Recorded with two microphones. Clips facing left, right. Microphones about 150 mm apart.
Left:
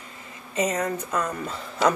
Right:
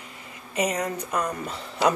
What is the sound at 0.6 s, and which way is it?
Speech, 15° right (ahead or behind).